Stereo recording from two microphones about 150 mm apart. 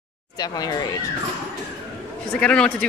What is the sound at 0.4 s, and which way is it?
Speech, 25° left (ahead or behind).